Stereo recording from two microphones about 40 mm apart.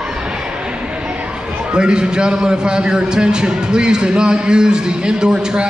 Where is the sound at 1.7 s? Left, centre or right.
Right.